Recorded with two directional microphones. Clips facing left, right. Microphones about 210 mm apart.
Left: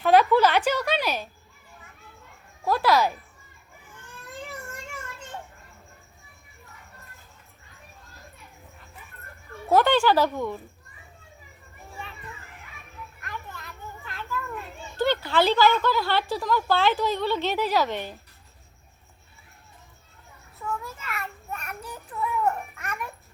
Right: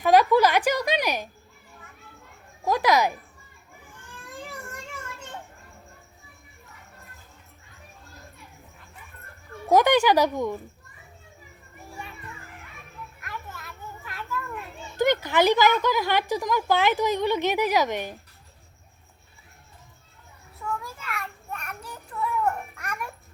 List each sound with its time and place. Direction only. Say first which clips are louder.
0.0 s a sound: even; 10° right (ahead or behind)
2.6 s a sound: even; 15° right (ahead or behind)
9.6 s music: right 1 dB; 15° right (ahead or behind)
13.2 s children playing: even; 5° right (ahead or behind)
14.9 s speech: right 1 dB; 15° right (ahead or behind)
20.6 s child singing: even; centre (ahead or behind)